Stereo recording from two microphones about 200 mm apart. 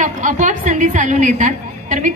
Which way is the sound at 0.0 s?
40° right (ahead or behind).